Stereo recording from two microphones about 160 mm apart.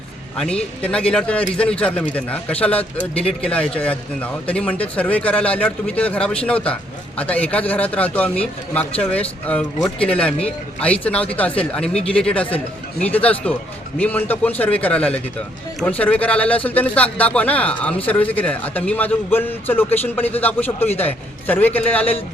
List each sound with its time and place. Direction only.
0.3 s speech: 5° left (ahead or behind)